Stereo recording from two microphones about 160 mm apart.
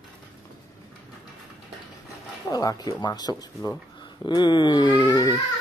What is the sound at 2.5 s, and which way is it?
Speech, 25° left (ahead or behind).